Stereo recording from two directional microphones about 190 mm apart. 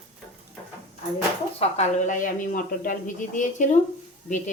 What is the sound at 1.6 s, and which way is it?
A woman's voice, 35° left (ahead or behind).